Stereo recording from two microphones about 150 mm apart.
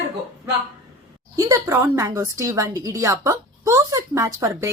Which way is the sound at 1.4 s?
20° right (ahead or behind).